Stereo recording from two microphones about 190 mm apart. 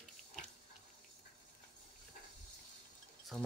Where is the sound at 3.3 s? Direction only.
5° left (ahead or behind).